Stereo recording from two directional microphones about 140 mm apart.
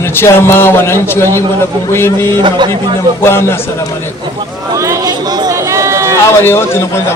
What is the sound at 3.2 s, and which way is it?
Speech, 15° left (ahead or behind).